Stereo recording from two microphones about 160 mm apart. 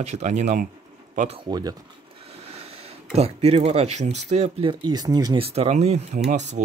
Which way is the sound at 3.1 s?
40° right (ahead or behind).